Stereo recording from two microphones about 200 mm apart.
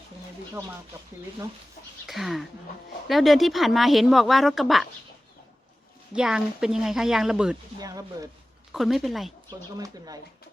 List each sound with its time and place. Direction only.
2.0 s speech: centre (ahead or behind)
6.1 s speech: 5° right (ahead or behind)
7.8 s speech: 15° right (ahead or behind)
8.7 s speech: centre (ahead or behind)
9.5 s speech: 15° right (ahead or behind)